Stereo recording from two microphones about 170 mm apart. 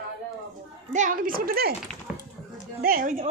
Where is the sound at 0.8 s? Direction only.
50° right (ahead or behind).